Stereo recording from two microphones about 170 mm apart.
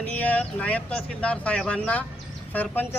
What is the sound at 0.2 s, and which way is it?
Speech, 10° left (ahead or behind).